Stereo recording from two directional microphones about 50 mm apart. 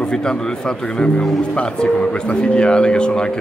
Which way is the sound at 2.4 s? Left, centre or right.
Centre.